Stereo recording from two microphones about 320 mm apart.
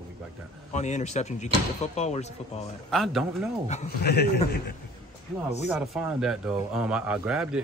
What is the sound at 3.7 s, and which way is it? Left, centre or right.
Speech, left.